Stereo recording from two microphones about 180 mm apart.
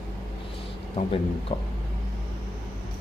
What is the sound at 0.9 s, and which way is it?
Speech, 30° left (ahead or behind).